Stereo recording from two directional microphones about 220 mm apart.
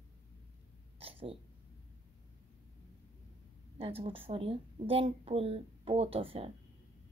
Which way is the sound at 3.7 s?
25° right (ahead or behind).